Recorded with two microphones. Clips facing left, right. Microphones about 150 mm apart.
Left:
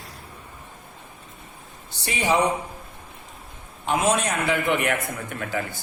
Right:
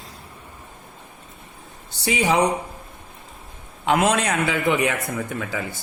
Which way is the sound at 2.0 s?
90° right.